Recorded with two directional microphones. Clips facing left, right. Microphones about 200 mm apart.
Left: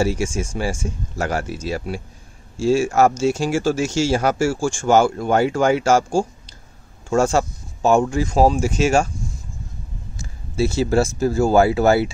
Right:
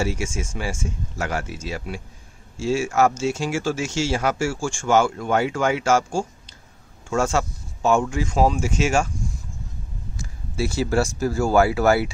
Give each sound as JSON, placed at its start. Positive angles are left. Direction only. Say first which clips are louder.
{"t": 0.0, "sound": "speech", "louder": "left 5 dB", "side_deg": 35}
{"t": 10.1, "sound": "speech", "louder": "left 5 dB", "side_deg": 25}